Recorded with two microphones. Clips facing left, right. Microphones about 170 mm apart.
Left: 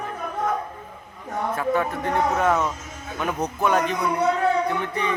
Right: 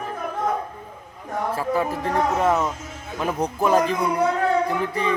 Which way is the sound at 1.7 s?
30° right (ahead or behind).